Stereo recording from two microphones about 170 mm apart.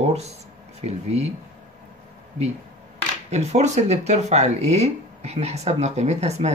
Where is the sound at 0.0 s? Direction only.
40° right (ahead or behind).